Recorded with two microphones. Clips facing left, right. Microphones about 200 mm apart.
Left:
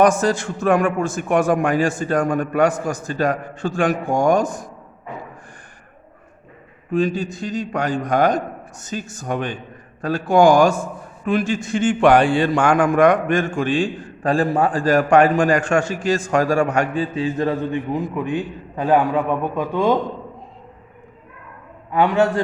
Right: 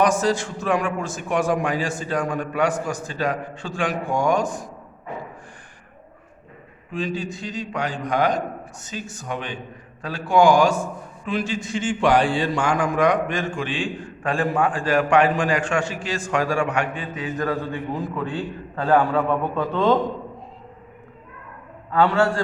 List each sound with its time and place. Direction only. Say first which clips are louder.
0.0 s a man's voice: left 4 dB; 50° left (ahead or behind)
6.9 s a man's voice: left 7 dB; 45° left (ahead or behind); by 20.0 s 10° left (ahead or behind)
21.9 s a man's voice: left 2 dB; 20° left (ahead or behind)